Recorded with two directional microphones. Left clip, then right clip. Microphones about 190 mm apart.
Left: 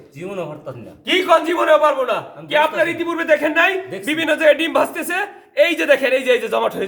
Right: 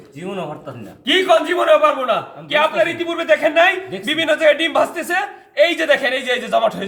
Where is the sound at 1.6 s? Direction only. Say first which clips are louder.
Right 1 dB; 25° left (ahead or behind).